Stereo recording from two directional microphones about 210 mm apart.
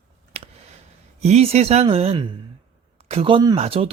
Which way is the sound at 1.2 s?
30° right (ahead or behind).